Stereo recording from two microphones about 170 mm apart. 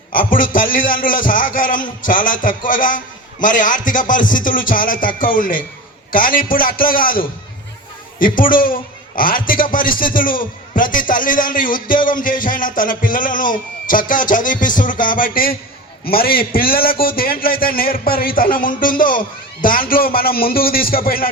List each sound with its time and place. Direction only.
0.1 s a man's voice: 55° left (ahead or behind)